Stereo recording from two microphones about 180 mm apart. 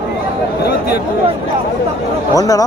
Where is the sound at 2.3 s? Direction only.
20° left (ahead or behind).